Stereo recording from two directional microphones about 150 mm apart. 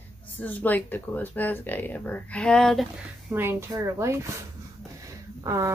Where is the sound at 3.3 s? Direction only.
15° right (ahead or behind).